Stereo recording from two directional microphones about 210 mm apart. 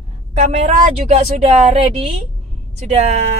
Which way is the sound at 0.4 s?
30° right (ahead or behind).